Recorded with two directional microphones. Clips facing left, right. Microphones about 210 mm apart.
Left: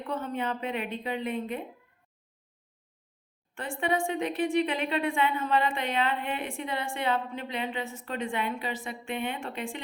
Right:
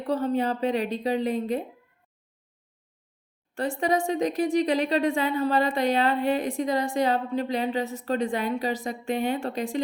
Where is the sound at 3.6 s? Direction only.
40° right (ahead or behind).